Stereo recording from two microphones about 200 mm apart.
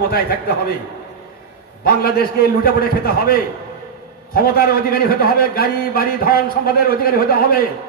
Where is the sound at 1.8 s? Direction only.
50° left (ahead or behind).